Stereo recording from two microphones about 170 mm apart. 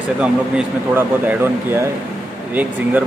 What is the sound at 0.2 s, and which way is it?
Speech, 10° right (ahead or behind).